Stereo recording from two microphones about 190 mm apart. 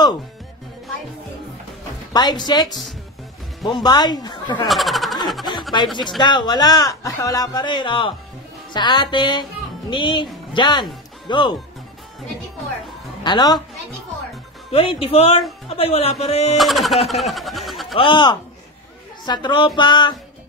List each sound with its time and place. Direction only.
2.1 s a man's voice: 20° left (ahead or behind)
4.6 s vehicle: centre (ahead or behind)
6.0 s a man's voice: 25° left (ahead or behind)
13.2 s a man's voice: 20° left (ahead or behind)
14.7 s a man's voice: 30° left (ahead or behind)
16.5 s a sound: centre (ahead or behind)
17.9 s a man's voice: 25° left (ahead or behind)